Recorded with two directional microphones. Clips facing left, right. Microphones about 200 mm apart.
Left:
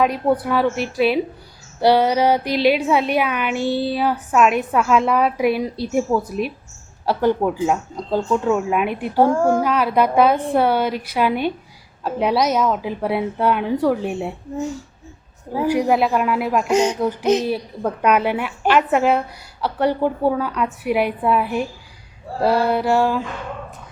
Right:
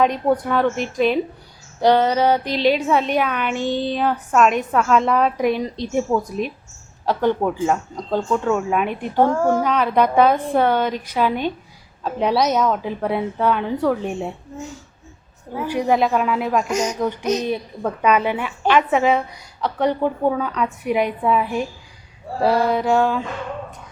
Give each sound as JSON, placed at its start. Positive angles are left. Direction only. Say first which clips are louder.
{"t": 0.0, "sound": "speech", "louder": "even", "side_deg": 5}
{"t": 15.6, "sound": "speech", "louder": "left 1 dB", "side_deg": 10}
{"t": 16.6, "sound": "speech", "louder": "left 5 dB", "side_deg": 30}
{"t": 17.4, "sound": "speech", "louder": "left 1 dB", "side_deg": 5}